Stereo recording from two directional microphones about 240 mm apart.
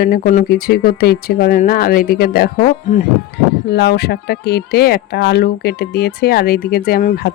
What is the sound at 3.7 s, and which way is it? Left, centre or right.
Speech, left.